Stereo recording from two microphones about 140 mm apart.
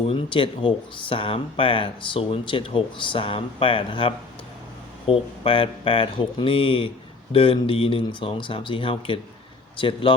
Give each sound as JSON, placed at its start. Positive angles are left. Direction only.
{"t": 0.1, "sound": "speech", "side_deg": 40}